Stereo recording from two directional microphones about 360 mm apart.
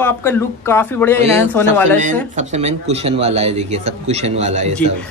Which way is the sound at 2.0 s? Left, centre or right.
Centre.